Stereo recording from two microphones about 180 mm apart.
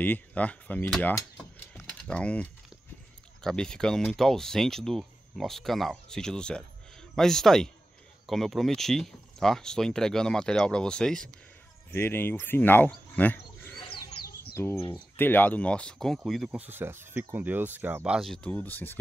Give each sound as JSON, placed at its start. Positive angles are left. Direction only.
{"t": 0.0, "sound": "speech", "side_deg": 10}
{"t": 1.8, "sound": "typing", "side_deg": 5}
{"t": 3.4, "sound": "speech", "side_deg": 5}
{"t": 13.9, "sound": "bird", "side_deg": 60}
{"t": 14.5, "sound": "speech", "side_deg": 15}